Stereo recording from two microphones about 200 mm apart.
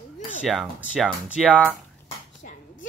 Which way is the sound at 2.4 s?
45° left (ahead or behind).